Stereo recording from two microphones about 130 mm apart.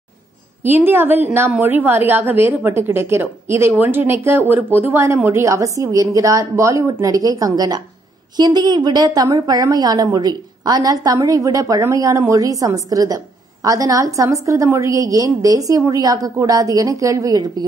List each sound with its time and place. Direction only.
0.7 s a woman's voice: 15° right (ahead or behind)